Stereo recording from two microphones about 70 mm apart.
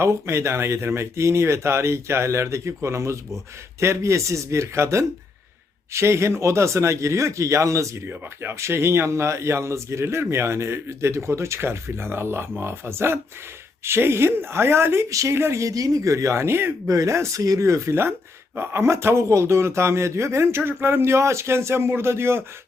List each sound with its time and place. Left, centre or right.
0.0 s speech: right
8.0 s speech: right
16.9 s speech: right